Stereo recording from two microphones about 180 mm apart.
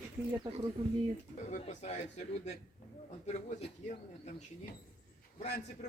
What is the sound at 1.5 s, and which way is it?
Speech, 40° left (ahead or behind).